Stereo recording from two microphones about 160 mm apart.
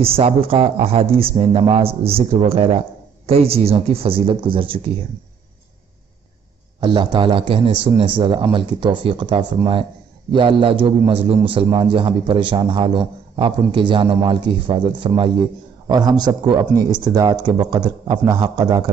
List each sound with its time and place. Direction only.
0.0 s a man's voice: 35° right (ahead or behind)
6.8 s a man's voice: 30° right (ahead or behind)